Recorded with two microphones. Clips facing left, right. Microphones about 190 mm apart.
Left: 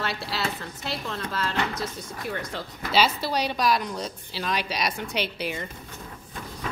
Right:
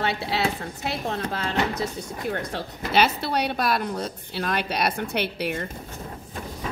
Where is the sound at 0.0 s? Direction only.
60° right (ahead or behind).